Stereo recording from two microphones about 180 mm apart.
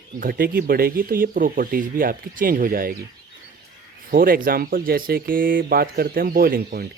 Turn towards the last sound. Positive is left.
turn(degrees=-55)  # may be behind; listen again after turning